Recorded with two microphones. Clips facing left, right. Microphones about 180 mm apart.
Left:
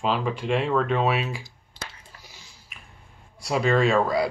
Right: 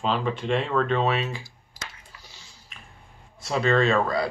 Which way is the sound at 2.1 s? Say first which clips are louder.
Left 1 dB; 40° left (ahead or behind).